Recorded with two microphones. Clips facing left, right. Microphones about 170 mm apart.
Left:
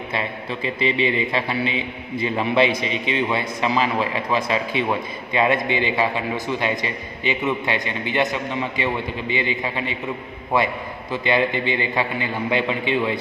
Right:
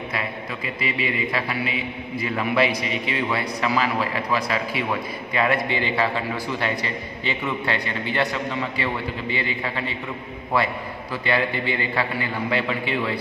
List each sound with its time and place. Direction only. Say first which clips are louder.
0.1 s a man's voice: left 6 dB; 25° left (ahead or behind)